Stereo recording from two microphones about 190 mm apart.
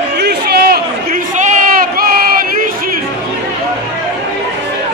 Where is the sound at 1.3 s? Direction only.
40° right (ahead or behind).